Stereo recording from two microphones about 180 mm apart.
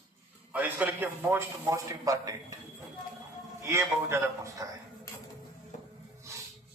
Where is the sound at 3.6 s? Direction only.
15° right (ahead or behind).